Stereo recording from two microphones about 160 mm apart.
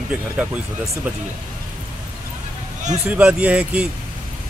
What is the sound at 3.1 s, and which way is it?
Speech, 10° right (ahead or behind).